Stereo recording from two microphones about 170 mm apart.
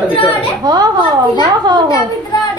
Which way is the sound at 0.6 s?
20° right (ahead or behind).